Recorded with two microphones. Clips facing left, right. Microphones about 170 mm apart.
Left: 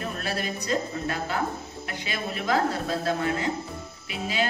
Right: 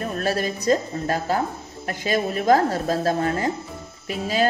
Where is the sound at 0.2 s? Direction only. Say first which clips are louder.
Right 7 dB; 40° right (ahead or behind).